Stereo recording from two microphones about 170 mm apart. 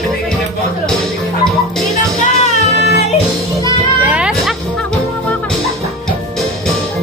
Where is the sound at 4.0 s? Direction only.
5° right (ahead or behind).